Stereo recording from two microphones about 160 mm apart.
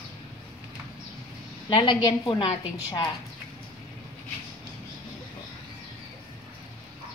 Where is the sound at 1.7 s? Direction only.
30° left (ahead or behind).